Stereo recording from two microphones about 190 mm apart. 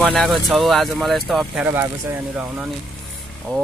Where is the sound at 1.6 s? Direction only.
10° right (ahead or behind).